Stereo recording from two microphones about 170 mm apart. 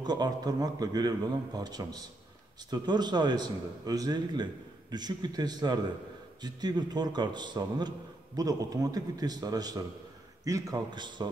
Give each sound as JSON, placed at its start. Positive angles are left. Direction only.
{"t": 0.0, "sound": "a man's voice", "side_deg": -25}